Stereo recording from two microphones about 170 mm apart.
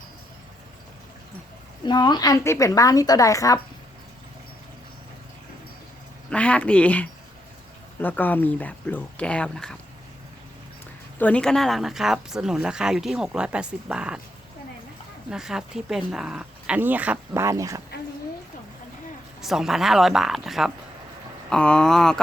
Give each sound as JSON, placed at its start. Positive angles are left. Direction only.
{"t": 1.8, "sound": "a woman's voice", "side_deg": 25}
{"t": 6.3, "sound": "speech", "side_deg": 5}
{"t": 11.2, "sound": "speech", "side_deg": 5}
{"t": 15.3, "sound": "speech", "side_deg": -5}
{"t": 19.4, "sound": "speech", "side_deg": 0}